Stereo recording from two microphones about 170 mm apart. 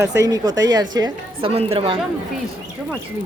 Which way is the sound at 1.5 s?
35° right (ahead or behind).